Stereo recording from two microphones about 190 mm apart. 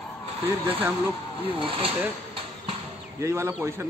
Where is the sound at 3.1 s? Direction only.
15° right (ahead or behind).